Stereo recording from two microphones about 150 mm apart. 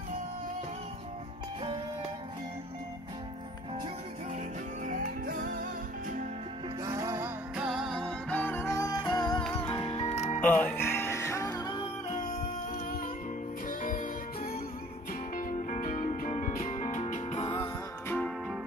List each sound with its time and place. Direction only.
4.8 s music: 65° right (ahead or behind)
6.8 s music: 25° right (ahead or behind); by 9.4 s 20° left (ahead or behind)
9.5 s music: 30° left (ahead or behind)
10.4 s music: 10° left (ahead or behind)
12.1 s music: 70° left (ahead or behind); by 17.6 s 45° left (ahead or behind)
18.0 s music: 10° left (ahead or behind)